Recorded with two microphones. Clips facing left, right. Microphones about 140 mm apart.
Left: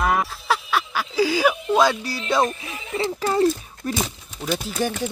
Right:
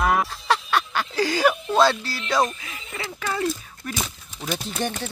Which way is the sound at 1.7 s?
15° left (ahead or behind).